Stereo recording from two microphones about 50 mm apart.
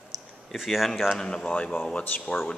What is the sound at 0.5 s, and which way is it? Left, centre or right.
Speech, centre.